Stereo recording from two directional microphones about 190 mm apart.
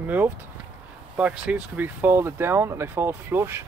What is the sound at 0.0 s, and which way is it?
Speech, 10° right (ahead or behind).